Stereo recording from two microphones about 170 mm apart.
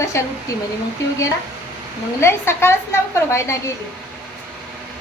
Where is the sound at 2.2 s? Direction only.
15° left (ahead or behind).